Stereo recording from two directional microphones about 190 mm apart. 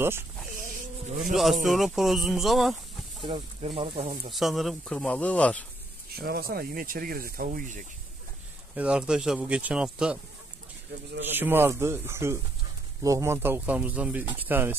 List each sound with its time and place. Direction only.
0.7 s a sound: 45° right (ahead or behind)
1.3 s speech: centre (ahead or behind)
3.2 s speech: 25° right (ahead or behind)
4.3 s speech: centre (ahead or behind)
6.1 s speech: 55° right (ahead or behind)
8.7 s speech: 5° right (ahead or behind)
11.2 s speech: 10° right (ahead or behind)